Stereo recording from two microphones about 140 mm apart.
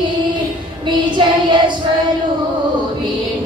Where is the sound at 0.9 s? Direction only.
35° right (ahead or behind).